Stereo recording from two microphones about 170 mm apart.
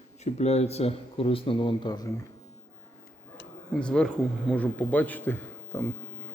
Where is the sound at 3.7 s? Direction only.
5° left (ahead or behind).